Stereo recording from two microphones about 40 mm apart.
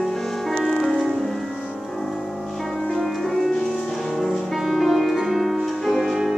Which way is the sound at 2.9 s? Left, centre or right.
Centre.